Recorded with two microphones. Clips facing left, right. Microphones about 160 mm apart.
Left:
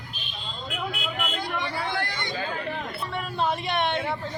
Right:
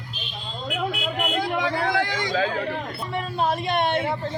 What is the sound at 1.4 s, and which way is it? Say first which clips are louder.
Chatter: right 7 dB; 90° right.